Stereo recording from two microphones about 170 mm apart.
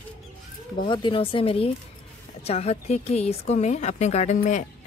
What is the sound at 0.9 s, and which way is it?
A woman's voice, 30° left (ahead or behind).